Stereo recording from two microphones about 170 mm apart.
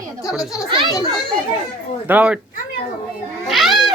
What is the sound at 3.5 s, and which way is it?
Cat, centre (ahead or behind).